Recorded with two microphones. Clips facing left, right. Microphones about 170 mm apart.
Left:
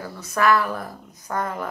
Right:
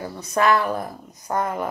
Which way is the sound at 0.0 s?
20° right (ahead or behind).